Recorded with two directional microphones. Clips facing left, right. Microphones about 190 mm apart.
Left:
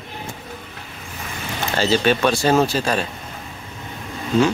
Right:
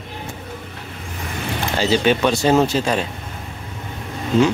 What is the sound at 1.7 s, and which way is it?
Speech, 15° right (ahead or behind).